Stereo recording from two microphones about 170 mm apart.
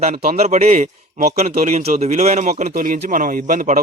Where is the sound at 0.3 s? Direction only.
40° right (ahead or behind).